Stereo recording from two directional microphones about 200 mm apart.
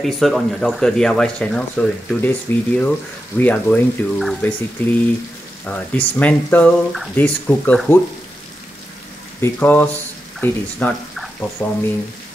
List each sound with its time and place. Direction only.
0.0 s speech: centre (ahead or behind)
9.4 s speech: 10° left (ahead or behind)